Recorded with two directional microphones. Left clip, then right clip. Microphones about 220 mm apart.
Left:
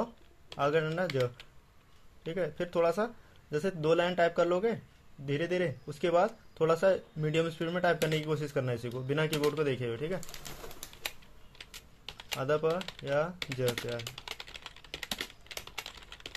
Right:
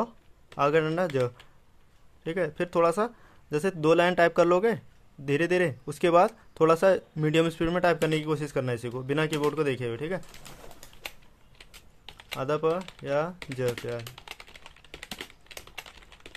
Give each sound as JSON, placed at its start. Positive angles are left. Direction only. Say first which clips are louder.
{"t": 0.6, "sound": "speech", "louder": "right 5 dB", "side_deg": -30}
{"t": 2.2, "sound": "speech", "louder": "right 5 dB", "side_deg": -30}
{"t": 12.3, "sound": "speech", "louder": "right 3 dB", "side_deg": -20}
{"t": 14.9, "sound": "typing", "louder": "left 2 dB", "side_deg": -10}